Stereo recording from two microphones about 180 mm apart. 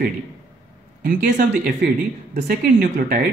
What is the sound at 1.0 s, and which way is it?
Speech, 50° right (ahead or behind).